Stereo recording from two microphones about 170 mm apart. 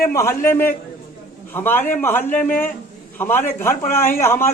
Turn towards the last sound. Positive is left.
turn(degrees=15)  # may be behind; listen again after turning